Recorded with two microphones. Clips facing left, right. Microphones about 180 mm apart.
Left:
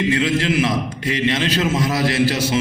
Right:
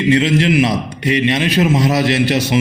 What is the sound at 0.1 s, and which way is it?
A man's voice, 20° right (ahead or behind).